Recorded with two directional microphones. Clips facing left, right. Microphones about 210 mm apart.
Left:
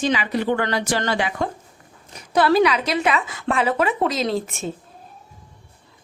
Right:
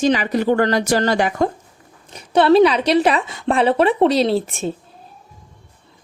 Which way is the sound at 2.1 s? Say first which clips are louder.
Right 5 dB; 25° right (ahead or behind).